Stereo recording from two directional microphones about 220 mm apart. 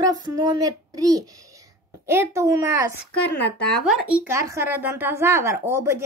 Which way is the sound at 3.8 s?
10° right (ahead or behind).